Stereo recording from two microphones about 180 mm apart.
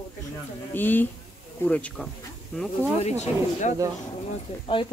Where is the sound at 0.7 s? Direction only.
10° left (ahead or behind).